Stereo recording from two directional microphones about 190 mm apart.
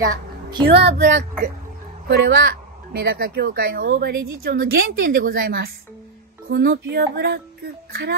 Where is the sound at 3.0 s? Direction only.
55° right (ahead or behind).